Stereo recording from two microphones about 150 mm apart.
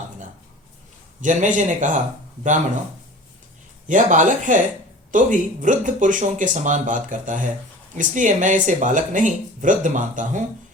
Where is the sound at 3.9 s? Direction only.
55° right (ahead or behind).